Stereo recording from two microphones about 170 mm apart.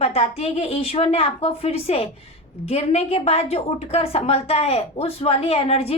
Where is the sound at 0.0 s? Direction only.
35° left (ahead or behind).